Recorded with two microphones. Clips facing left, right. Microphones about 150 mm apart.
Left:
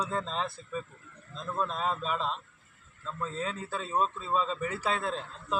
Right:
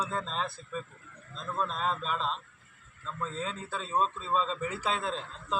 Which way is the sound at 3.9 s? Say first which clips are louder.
Even; 10° left (ahead or behind).